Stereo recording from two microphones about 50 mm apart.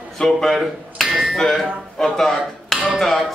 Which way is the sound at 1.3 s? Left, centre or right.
Centre.